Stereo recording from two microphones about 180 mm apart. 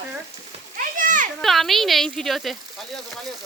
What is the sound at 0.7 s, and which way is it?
Children playing, 50° right (ahead or behind).